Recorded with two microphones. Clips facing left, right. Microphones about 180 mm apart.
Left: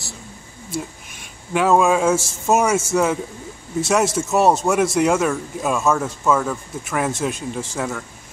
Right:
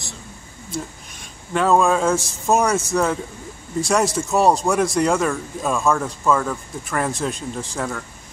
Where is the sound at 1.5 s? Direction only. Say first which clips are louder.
Left 1 dB; 5° left (ahead or behind).